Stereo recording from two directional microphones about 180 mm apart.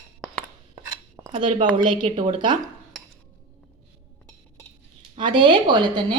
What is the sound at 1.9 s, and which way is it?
Speech, 25° right (ahead or behind).